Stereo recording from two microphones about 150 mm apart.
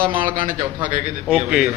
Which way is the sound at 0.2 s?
60° right (ahead or behind).